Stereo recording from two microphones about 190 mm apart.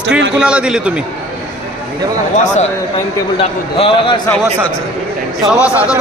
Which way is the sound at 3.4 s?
30° left (ahead or behind).